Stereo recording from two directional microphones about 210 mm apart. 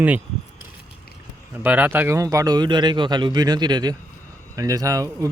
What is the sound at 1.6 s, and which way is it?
Speech, 10° right (ahead or behind).